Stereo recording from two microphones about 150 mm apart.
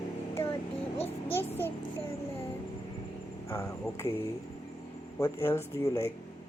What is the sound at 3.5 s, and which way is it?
Speech, 15° left (ahead or behind).